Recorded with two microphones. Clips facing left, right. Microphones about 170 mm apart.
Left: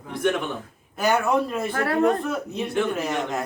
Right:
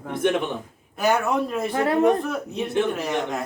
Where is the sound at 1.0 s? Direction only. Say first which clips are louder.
Even; centre (ahead or behind).